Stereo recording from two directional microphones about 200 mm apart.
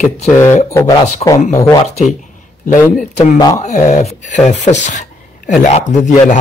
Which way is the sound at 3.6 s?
35° left (ahead or behind).